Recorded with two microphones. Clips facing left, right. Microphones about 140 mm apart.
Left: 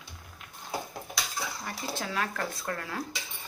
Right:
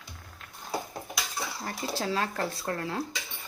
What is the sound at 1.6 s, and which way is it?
Speech, 35° right (ahead or behind).